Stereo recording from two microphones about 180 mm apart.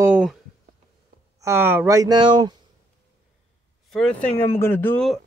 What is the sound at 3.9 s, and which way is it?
Speech, 5° left (ahead or behind).